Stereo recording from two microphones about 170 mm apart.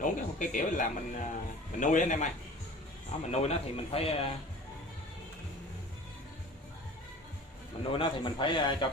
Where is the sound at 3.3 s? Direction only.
35° left (ahead or behind).